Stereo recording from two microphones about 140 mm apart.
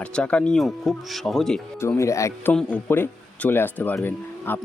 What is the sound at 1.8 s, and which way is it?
Speech, 20° left (ahead or behind).